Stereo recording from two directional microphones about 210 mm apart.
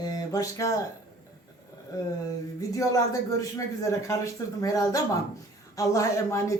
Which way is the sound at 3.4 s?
15° left (ahead or behind).